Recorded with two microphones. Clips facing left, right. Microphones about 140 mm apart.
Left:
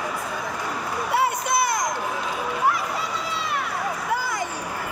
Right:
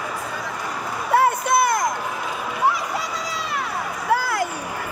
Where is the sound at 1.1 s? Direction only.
55° right (ahead or behind).